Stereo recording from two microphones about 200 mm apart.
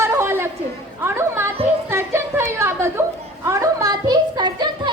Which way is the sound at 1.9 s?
10° right (ahead or behind).